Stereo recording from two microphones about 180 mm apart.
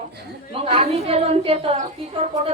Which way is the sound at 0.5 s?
30° right (ahead or behind).